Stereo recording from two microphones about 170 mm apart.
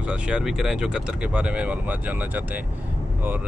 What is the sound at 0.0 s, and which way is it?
Speech, 5° right (ahead or behind).